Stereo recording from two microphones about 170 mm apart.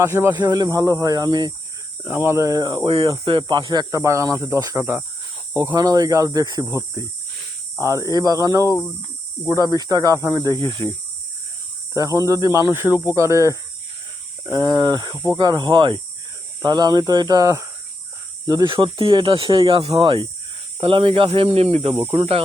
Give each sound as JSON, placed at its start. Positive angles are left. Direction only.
{"t": 0.0, "sound": "speech", "side_deg": -15}
{"t": 10.5, "sound": "speech", "side_deg": 20}
{"t": 11.9, "sound": "speech", "side_deg": -20}